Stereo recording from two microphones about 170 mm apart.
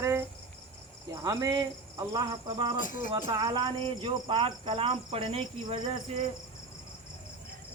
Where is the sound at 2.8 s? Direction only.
50° left (ahead or behind).